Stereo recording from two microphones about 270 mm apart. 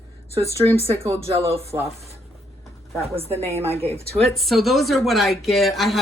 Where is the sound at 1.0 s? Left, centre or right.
Right.